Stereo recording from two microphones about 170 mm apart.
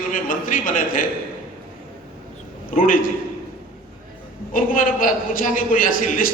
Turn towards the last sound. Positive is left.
turn(degrees=55)  # may be behind; listen again after turning